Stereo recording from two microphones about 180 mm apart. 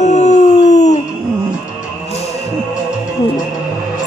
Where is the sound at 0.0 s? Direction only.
40° left (ahead or behind).